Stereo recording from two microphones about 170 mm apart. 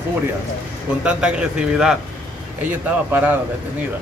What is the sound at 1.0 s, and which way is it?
A man's voice, 5° right (ahead or behind).